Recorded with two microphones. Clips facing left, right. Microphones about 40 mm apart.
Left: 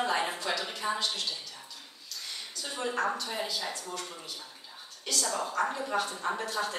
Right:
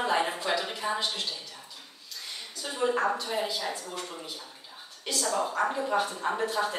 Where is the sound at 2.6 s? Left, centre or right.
Centre.